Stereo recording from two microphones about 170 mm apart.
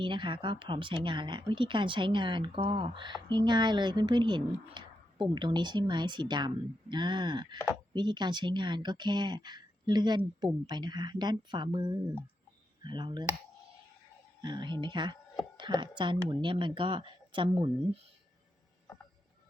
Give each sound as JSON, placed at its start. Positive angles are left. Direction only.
{"t": 0.0, "sound": "speech", "side_deg": -30}
{"t": 14.4, "sound": "speech", "side_deg": -25}